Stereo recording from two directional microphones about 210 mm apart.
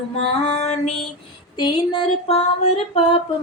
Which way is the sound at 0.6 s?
30° left (ahead or behind).